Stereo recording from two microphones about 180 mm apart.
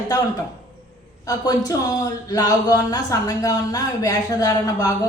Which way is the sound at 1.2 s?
20° left (ahead or behind).